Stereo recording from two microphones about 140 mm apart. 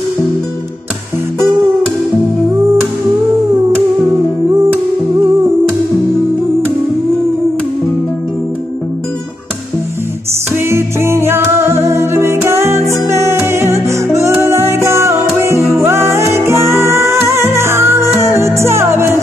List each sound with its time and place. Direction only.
10.5 s music: 20° right (ahead or behind)